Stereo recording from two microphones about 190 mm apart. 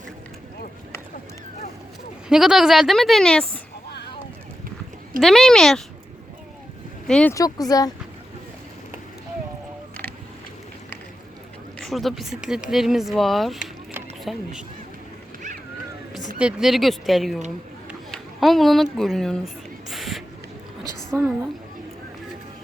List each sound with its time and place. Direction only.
2.3 s speech: centre (ahead or behind)
5.2 s speech: centre (ahead or behind)
7.1 s speech: 5° left (ahead or behind)
7.3 s speech: 20° left (ahead or behind)
11.8 s speech: centre (ahead or behind)
16.4 s speech: 5° right (ahead or behind)
19.9 s a sound: centre (ahead or behind)
21.1 s a woman's voice: 15° right (ahead or behind)